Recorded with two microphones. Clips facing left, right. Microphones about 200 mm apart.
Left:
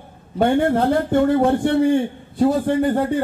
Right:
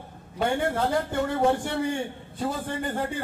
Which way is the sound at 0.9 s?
55° left (ahead or behind).